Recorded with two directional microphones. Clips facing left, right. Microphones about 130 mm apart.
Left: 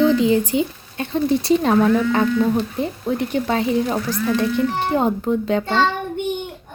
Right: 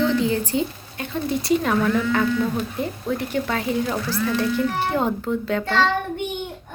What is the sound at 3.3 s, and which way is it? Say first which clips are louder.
Speech: left 5 dB; 20° left (ahead or behind).